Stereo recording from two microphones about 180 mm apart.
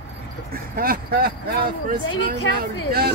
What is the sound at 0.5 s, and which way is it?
Speech, 55° right (ahead or behind).